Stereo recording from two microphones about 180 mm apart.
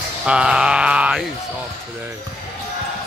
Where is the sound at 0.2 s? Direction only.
5° right (ahead or behind).